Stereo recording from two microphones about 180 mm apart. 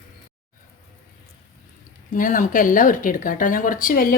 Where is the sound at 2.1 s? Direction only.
50° left (ahead or behind).